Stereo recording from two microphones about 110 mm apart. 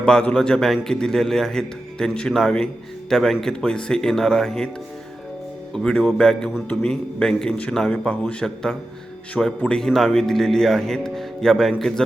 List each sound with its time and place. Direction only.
0.0 s speech: 10° left (ahead or behind)
5.7 s speech: 5° left (ahead or behind)